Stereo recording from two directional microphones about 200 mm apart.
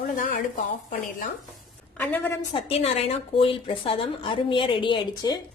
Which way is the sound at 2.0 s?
10° left (ahead or behind).